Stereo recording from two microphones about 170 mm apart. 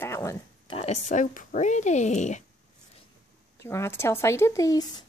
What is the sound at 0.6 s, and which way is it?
Speech, 35° left (ahead or behind).